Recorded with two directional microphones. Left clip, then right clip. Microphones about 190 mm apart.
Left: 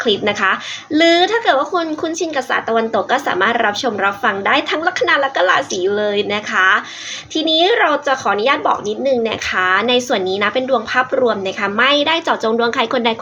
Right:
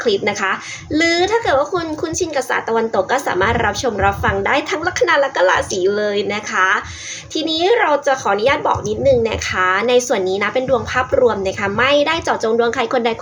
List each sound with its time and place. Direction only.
0.9 s a woman's voice: 5° left (ahead or behind)